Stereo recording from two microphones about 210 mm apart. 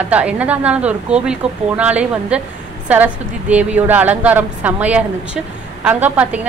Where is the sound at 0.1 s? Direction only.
5° right (ahead or behind).